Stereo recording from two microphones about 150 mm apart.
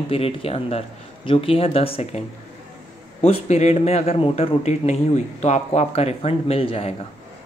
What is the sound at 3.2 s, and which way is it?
A man's voice, 45° left (ahead or behind).